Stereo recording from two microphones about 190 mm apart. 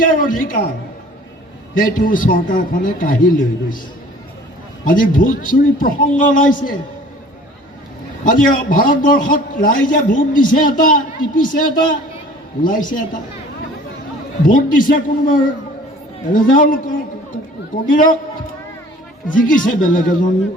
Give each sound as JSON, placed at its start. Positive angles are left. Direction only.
{"t": 0.0, "sound": "a man's voice", "side_deg": 45}
{"t": 1.8, "sound": "a man's voice", "side_deg": 45}
{"t": 4.9, "sound": "a man's voice", "side_deg": 45}
{"t": 8.2, "sound": "a man's voice", "side_deg": 45}
{"t": 14.4, "sound": "a man's voice", "side_deg": 45}
{"t": 19.3, "sound": "a man's voice", "side_deg": 45}